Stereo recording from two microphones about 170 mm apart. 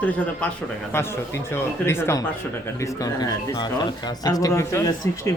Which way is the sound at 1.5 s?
15° left (ahead or behind).